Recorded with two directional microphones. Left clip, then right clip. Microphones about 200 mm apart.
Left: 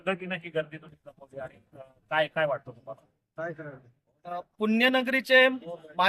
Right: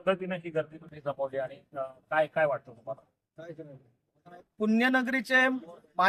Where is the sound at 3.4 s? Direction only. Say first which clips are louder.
Left 8 dB; 25° right (ahead or behind).